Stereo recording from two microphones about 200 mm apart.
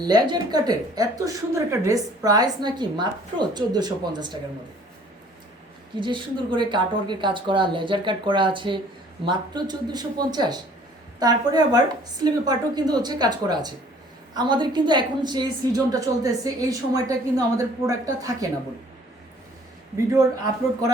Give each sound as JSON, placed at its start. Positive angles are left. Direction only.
{"t": 0.0, "sound": "speech", "side_deg": -20}
{"t": 6.0, "sound": "a woman's voice", "side_deg": -25}